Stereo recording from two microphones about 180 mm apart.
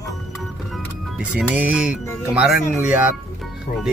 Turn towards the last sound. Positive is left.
turn(degrees=-10)  # may be behind; listen again after turning